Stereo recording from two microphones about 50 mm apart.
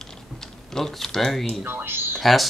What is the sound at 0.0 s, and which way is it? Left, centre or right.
Typing, centre.